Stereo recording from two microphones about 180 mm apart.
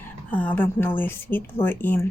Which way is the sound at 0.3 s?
10° left (ahead or behind).